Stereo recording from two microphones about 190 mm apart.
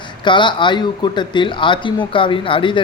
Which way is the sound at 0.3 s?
25° left (ahead or behind).